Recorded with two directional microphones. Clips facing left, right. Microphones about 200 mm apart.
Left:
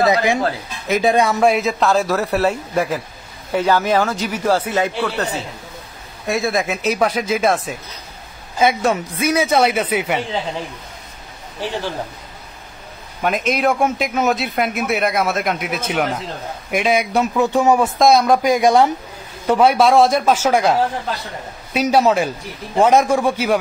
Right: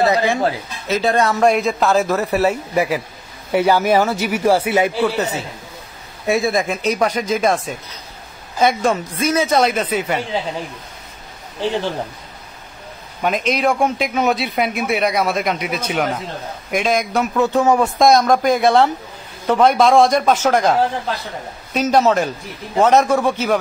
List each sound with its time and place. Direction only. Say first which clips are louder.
0.1 s a man's voice: even; 15° left (ahead or behind)
13.5 s a man's voice: even; centre (ahead or behind)
17.9 s a man's voice: even; centre (ahead or behind)